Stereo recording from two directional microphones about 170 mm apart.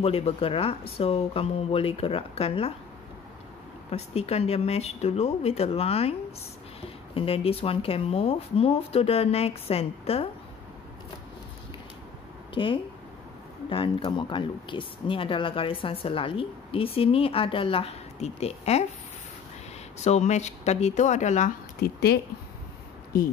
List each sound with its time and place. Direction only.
0.0 s speech: 35° left (ahead or behind)
3.9 s speech: 35° left (ahead or behind)
7.2 s speech: 35° left (ahead or behind)
12.5 s speech: 30° left (ahead or behind)
20.0 s speech: 40° left (ahead or behind)
21.8 s speech: 70° left (ahead or behind)